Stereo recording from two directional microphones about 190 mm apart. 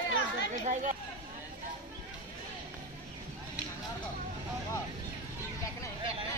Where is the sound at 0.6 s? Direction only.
40° right (ahead or behind).